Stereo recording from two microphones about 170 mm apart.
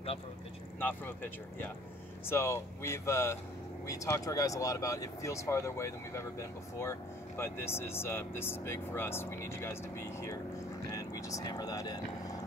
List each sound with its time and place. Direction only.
0.7 s speech: 10° left (ahead or behind)